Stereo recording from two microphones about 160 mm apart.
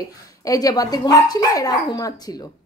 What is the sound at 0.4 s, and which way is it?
A woman's voice, 20° left (ahead or behind).